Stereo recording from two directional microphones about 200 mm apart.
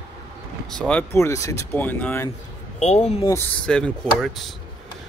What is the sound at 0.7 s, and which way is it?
Speech, 5° left (ahead or behind).